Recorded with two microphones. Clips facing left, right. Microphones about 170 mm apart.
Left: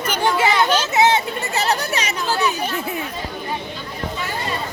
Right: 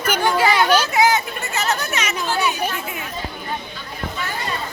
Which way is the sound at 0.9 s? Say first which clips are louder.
Left 1 dB; 25° left (ahead or behind).